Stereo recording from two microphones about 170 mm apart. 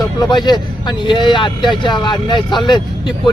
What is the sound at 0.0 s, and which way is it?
Speech, 25° left (ahead or behind).